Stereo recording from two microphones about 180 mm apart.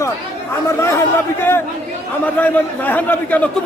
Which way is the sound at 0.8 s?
15° left (ahead or behind).